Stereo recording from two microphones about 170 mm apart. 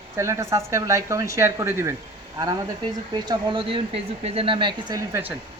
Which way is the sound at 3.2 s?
30° right (ahead or behind).